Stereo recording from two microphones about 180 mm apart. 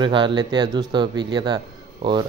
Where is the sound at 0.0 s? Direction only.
25° right (ahead or behind).